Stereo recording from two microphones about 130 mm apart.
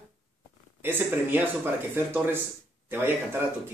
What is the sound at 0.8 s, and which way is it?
Speech, 15° right (ahead or behind).